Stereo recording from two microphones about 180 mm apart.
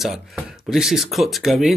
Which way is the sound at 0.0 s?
Centre (ahead or behind).